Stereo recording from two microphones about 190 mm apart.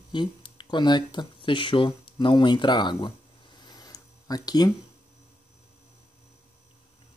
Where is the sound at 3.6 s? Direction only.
20° left (ahead or behind).